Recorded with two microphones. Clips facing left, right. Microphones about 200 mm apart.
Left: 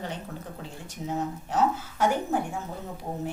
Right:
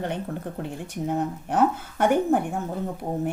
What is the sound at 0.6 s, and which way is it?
Speech, 55° right (ahead or behind).